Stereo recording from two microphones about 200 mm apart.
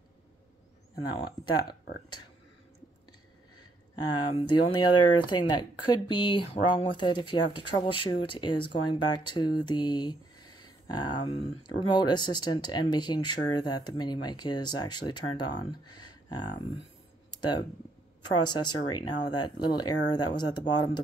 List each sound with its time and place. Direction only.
0.9 s speech: 20° left (ahead or behind)
4.6 s speech: 20° left (ahead or behind)
18.5 s speech: 20° left (ahead or behind)